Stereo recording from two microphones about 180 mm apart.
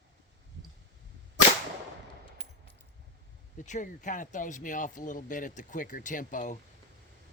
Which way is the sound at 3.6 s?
45° left (ahead or behind).